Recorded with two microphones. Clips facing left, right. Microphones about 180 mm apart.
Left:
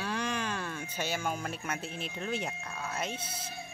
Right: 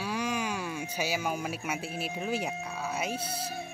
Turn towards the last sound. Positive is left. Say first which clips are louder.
# right 3 dB
turn(degrees=-10)  # may be behind; listen again after turning